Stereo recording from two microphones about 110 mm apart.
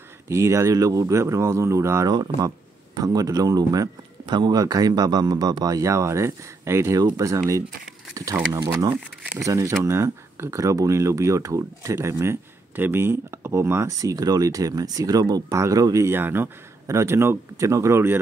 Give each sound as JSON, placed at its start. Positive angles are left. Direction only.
{"t": 0.3, "sound": "speech", "side_deg": -25}
{"t": 2.1, "sound": "speech", "side_deg": -35}
{"t": 9.4, "sound": "speech", "side_deg": -30}